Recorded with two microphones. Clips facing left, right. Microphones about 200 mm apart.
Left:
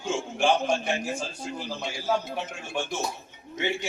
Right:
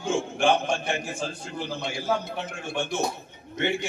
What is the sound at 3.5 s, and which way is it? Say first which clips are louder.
Speech: right 3 dB; 55° right (ahead or behind).